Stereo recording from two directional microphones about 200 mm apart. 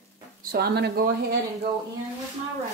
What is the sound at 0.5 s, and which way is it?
Speech, 55° right (ahead or behind).